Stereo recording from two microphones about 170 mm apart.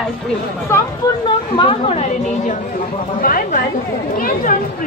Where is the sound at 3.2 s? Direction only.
55° left (ahead or behind).